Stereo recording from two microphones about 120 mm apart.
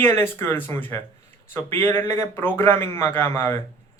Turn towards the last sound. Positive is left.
turn(degrees=20)  # may be behind; listen again after turning